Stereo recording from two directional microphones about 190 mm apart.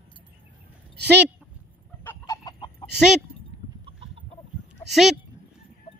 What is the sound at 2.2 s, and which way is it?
Chicken, 20° left (ahead or behind).